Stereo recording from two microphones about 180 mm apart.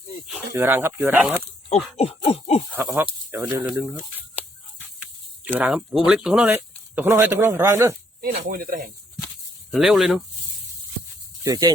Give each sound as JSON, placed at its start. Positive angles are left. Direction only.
{"t": 0.3, "sound": "speech", "side_deg": -10}
{"t": 2.0, "sound": "owl", "side_deg": 30}
{"t": 2.7, "sound": "speech", "side_deg": -10}
{"t": 5.5, "sound": "speech", "side_deg": -5}
{"t": 8.2, "sound": "speech", "side_deg": -55}
{"t": 9.7, "sound": "speech", "side_deg": 0}
{"t": 11.4, "sound": "speech", "side_deg": -20}